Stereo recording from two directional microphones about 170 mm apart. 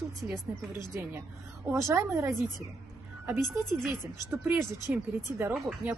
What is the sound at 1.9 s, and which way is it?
Speech, 15° right (ahead or behind).